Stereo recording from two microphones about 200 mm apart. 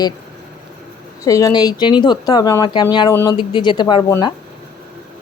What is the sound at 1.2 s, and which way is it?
A woman's voice, 15° left (ahead or behind).